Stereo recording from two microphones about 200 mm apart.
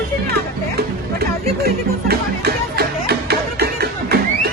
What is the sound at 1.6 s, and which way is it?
Music, 50° right (ahead or behind).